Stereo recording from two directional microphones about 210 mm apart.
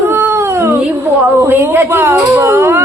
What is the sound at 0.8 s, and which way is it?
A woman's voice, 10° right (ahead or behind).